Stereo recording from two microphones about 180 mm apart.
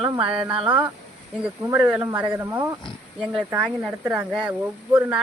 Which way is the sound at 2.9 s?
Centre (ahead or behind).